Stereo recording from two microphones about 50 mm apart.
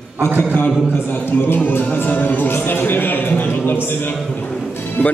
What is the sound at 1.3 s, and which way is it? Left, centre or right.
Speech, left.